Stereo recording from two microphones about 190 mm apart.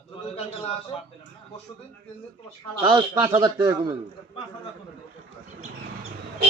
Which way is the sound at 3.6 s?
10° right (ahead or behind).